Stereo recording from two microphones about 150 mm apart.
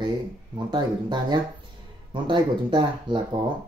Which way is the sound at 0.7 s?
30° right (ahead or behind).